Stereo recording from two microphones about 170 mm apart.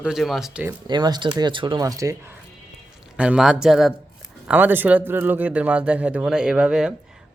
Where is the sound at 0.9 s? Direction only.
25° right (ahead or behind).